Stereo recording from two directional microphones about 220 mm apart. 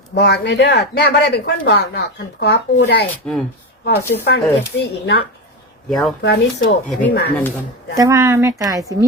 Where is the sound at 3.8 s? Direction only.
50° left (ahead or behind).